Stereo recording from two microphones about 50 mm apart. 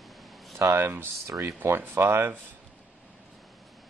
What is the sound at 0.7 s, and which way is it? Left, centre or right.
Speech, right.